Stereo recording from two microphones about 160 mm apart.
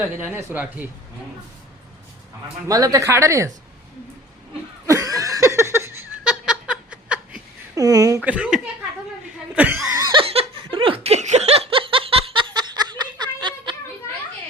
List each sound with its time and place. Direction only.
0.2 s speech: 10° right (ahead or behind)
2.6 s speech: 20° right (ahead or behind)
4.9 s a sound: 20° right (ahead or behind)
6.2 s giggle: 5° right (ahead or behind)
7.8 s a sound: 20° right (ahead or behind)
8.2 s speech: 10° right (ahead or behind)
9.9 s laughter: 20° right (ahead or behind)
10.2 s laughter: 35° right (ahead or behind)